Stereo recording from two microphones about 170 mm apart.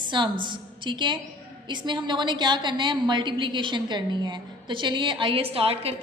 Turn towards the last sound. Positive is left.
turn(degrees=-35)  # may be behind; listen again after turning